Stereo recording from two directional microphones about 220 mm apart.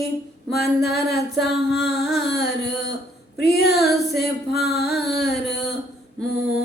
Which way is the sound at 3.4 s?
45° left (ahead or behind).